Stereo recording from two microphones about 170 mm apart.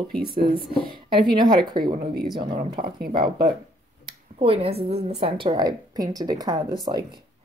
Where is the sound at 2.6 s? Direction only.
55° right (ahead or behind).